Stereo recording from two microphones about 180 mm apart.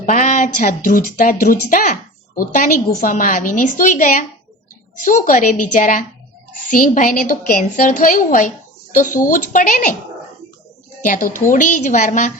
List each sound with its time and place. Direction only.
0.0 s a woman's voice: 45° left (ahead or behind)
11.0 s a woman's voice: 45° left (ahead or behind)